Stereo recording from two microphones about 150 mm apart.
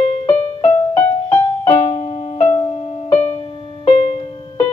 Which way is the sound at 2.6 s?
40° left (ahead or behind).